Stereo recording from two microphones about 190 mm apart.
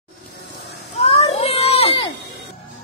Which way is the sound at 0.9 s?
30° left (ahead or behind).